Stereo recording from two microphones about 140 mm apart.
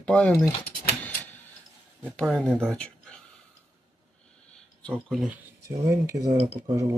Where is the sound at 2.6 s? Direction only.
5° left (ahead or behind).